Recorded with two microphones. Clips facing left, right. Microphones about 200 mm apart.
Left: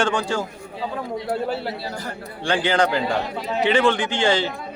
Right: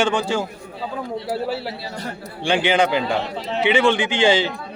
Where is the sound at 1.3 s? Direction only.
5° right (ahead or behind).